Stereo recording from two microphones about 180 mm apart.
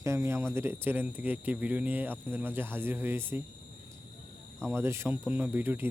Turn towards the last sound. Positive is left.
turn(degrees=-10)  # may be behind; listen again after turning